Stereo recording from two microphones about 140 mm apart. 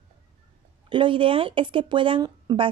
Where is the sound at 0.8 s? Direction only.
35° right (ahead or behind).